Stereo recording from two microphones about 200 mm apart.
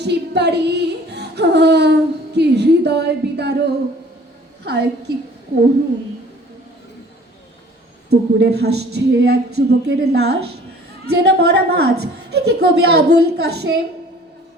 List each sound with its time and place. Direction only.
0.0 s a sound: 55° right (ahead or behind)
4.6 s a child's voice: 55° right (ahead or behind)
8.1 s a child's voice: 55° right (ahead or behind)